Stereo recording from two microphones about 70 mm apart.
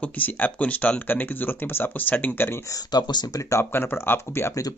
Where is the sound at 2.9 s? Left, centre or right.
Left.